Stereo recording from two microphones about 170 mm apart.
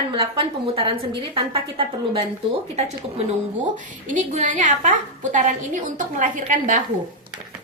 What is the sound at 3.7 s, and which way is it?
A woman's voice, 50° right (ahead or behind).